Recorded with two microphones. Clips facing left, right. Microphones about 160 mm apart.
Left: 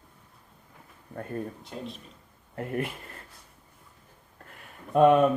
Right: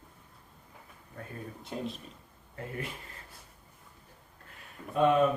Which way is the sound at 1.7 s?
Centre (ahead or behind).